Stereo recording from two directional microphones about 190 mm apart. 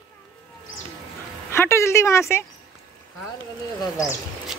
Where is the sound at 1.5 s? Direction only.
15° left (ahead or behind).